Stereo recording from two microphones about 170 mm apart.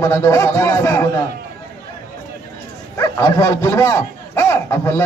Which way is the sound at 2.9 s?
20° left (ahead or behind).